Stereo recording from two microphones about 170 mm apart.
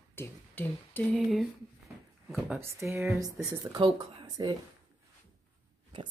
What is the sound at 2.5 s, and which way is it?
Speech, 15° right (ahead or behind).